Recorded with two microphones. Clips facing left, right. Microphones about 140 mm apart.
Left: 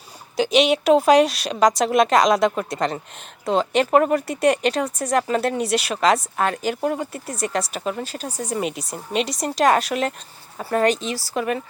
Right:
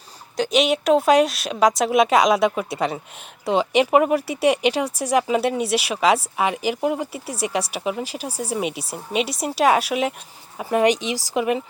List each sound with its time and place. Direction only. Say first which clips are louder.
0.3 s a woman's voice: left 2 dB; centre (ahead or behind); by 11.6 s 15° right (ahead or behind)